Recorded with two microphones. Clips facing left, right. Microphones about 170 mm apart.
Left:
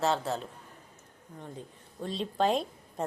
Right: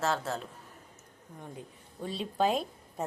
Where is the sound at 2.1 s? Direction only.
5° right (ahead or behind).